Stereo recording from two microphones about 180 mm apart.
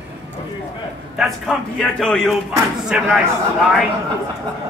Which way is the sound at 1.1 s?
Centre (ahead or behind).